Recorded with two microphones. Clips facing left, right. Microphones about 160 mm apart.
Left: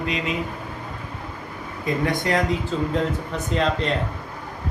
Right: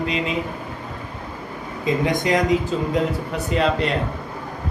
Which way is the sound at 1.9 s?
20° right (ahead or behind).